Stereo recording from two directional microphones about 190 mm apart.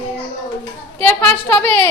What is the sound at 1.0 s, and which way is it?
Speech, 5° left (ahead or behind).